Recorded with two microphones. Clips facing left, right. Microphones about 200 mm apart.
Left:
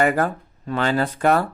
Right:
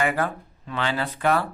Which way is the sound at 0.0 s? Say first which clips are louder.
Left 5 dB; 45° left (ahead or behind).